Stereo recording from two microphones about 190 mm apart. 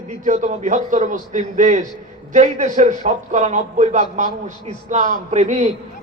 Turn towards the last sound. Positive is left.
turn(degrees=-35)  # may be behind; listen again after turning